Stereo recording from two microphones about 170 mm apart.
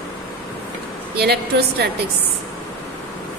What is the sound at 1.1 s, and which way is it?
Speech, 70° right (ahead or behind).